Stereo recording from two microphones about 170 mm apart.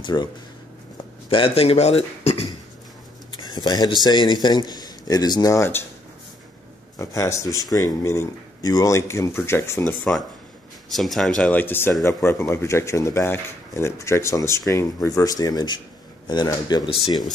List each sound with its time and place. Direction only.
0.0 s a man's voice: 25° left (ahead or behind)
1.3 s speech: 35° left (ahead or behind)
3.3 s a sound: 25° left (ahead or behind)
4.0 s a man's voice: 25° left (ahead or behind)
7.0 s a man's voice: 20° left (ahead or behind)
10.9 s a man's voice: centre (ahead or behind); by 16.9 s 25° left (ahead or behind)